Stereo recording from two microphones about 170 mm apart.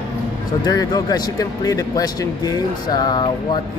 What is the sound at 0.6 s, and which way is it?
Speech, 25° left (ahead or behind).